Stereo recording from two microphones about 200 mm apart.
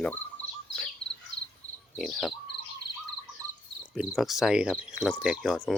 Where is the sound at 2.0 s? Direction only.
Centre (ahead or behind).